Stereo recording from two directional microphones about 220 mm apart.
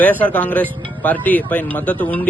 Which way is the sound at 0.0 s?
5° left (ahead or behind).